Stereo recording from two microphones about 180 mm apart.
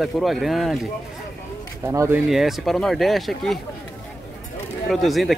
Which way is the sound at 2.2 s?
Centre (ahead or behind).